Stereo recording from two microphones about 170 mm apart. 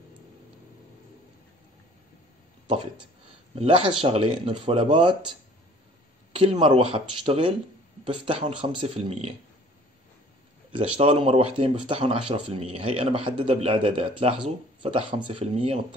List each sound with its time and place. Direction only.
3.5 s speech: 30° right (ahead or behind)
10.7 s speech: 35° right (ahead or behind)